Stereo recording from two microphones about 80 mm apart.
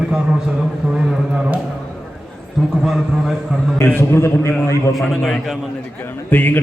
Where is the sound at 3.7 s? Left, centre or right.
Left.